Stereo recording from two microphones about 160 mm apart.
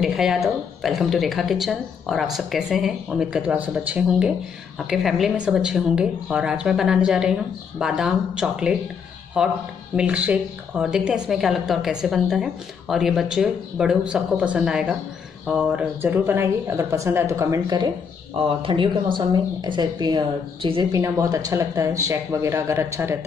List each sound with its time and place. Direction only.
0.0 s a woman's voice: 5° right (ahead or behind); by 17.8 s 20° right (ahead or behind)
18.6 s a woman's voice: 30° right (ahead or behind)